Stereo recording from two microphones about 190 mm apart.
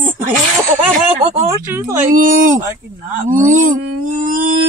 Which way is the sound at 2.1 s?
45° right (ahead or behind).